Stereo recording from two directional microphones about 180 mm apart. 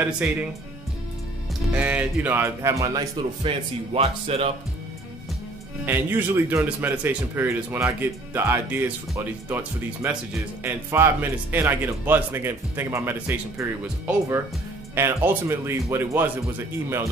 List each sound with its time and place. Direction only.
0.2 s speech: 10° right (ahead or behind)
1.7 s speech: 5° right (ahead or behind)
3.4 s speech: 35° right (ahead or behind)
5.9 s speech: 15° right (ahead or behind)